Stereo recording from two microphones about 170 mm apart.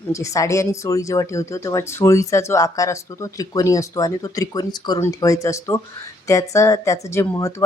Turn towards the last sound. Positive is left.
turn(degrees=15)  # may be behind; listen again after turning